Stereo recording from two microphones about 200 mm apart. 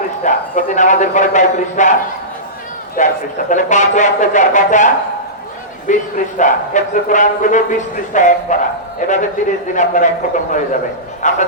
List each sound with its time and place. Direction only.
0.3 s a man's voice: 40° left (ahead or behind)
3.0 s a man's voice: 40° left (ahead or behind)
5.9 s a man's voice: 40° left (ahead or behind)